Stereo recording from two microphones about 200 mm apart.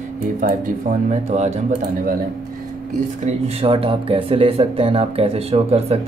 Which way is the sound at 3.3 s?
30° right (ahead or behind).